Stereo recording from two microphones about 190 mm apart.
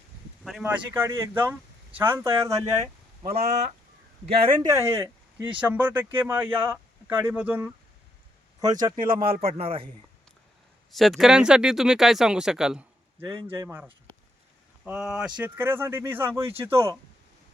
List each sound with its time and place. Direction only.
0.6 s speech: 10° right (ahead or behind)
3.5 s speech: 35° right (ahead or behind); by 7.7 s 10° right (ahead or behind)
8.6 s speech: 20° right (ahead or behind)
10.9 s speech: centre (ahead or behind)
14.8 s speech: 5° right (ahead or behind)